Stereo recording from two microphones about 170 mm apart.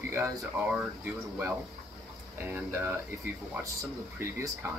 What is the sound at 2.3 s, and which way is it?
Speech, 15° right (ahead or behind).